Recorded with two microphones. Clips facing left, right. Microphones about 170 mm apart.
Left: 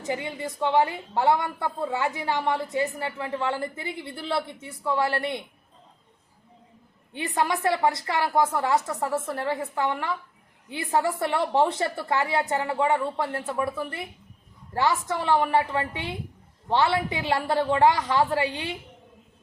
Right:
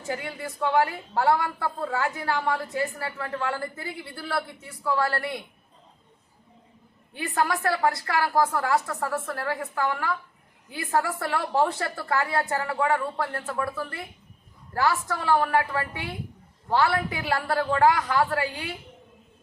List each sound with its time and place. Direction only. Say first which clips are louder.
0.1 s a woman's voice: left 2 dB; 20° left (ahead or behind)
7.1 s a woman's voice: even; 20° left (ahead or behind)